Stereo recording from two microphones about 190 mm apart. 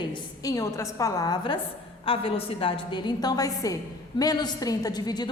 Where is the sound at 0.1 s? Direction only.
20° left (ahead or behind).